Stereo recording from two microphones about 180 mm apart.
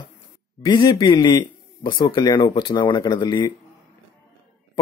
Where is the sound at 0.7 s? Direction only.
25° left (ahead or behind).